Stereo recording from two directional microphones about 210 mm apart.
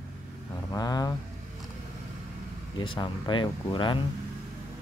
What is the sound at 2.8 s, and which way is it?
Speech, 25° left (ahead or behind).